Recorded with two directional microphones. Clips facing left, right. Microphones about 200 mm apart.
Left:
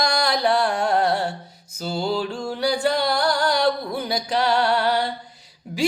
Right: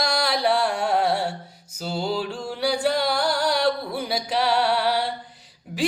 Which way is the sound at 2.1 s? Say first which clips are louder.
Left 3 dB; 5° right (ahead or behind).